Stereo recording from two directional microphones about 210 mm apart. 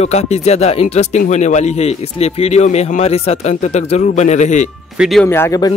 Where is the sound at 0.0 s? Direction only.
30° left (ahead or behind).